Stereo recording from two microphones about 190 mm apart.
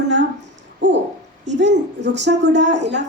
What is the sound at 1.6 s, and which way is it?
A woman's voice, 65° right (ahead or behind).